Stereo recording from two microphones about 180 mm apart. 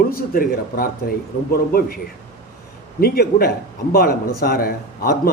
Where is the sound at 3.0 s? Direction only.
60° left (ahead or behind).